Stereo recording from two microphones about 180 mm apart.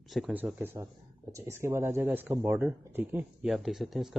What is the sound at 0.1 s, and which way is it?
Speech, 5° right (ahead or behind).